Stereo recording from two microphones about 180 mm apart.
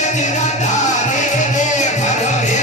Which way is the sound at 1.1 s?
40° left (ahead or behind).